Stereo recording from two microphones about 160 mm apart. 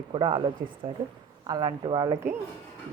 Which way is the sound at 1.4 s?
25° right (ahead or behind).